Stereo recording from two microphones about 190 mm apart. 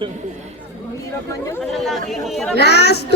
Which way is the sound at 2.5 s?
60° left (ahead or behind).